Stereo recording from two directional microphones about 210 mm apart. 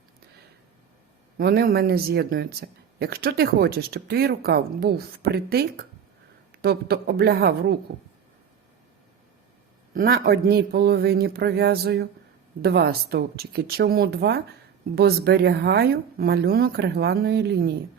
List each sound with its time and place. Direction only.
1.4 s speech: 45° right (ahead or behind)
9.9 s speech: 45° right (ahead or behind)